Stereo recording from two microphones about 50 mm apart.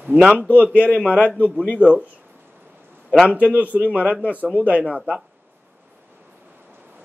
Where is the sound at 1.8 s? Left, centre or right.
Right.